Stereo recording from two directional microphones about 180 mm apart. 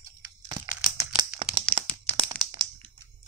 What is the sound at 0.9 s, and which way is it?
Crumpling, 20° right (ahead or behind).